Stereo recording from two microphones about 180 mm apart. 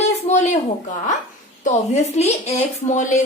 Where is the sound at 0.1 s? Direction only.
40° left (ahead or behind).